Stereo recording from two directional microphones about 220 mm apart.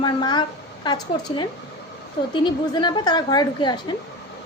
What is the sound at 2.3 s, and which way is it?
A woman's voice, 20° left (ahead or behind).